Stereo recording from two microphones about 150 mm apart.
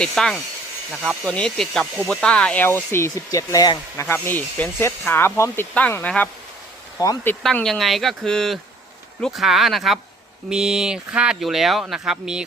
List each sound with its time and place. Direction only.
0.0 s speech: 5° left (ahead or behind); by 4.0 s 25° left (ahead or behind)
4.1 s speech: 15° left (ahead or behind)
7.0 s speech: 25° left (ahead or behind)
7.4 s speech: centre (ahead or behind)